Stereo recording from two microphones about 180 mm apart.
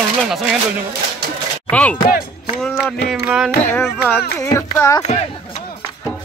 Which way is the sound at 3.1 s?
5° right (ahead or behind).